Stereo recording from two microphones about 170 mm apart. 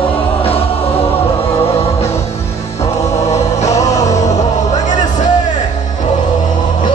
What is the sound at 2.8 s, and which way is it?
Music, 40° left (ahead or behind).